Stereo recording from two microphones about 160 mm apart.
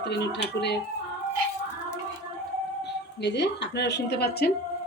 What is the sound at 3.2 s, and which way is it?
Speech, 90° left.